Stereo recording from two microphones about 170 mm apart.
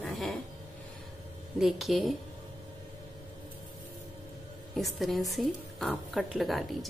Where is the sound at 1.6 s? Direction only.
Centre (ahead or behind).